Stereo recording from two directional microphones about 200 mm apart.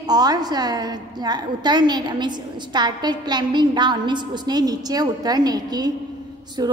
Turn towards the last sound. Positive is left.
turn(degrees=-20)  # may be behind; listen again after turning